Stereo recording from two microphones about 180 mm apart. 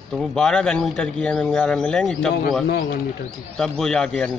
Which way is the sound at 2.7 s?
60° left (ahead or behind).